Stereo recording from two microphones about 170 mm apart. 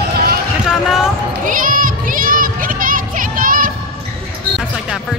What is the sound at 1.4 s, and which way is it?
Children playing, 50° right (ahead or behind).